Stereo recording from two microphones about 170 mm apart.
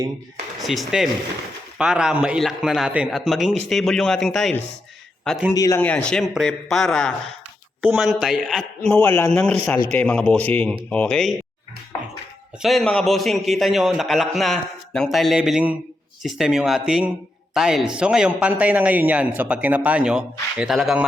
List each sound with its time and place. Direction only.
0.6 s a man's voice: centre (ahead or behind)
5.5 s speech: 20° left (ahead or behind)
5.8 s a man's voice: 5° left (ahead or behind)
8.9 s a man's voice: 10° left (ahead or behind)
12.6 s a man's voice: 5° left (ahead or behind)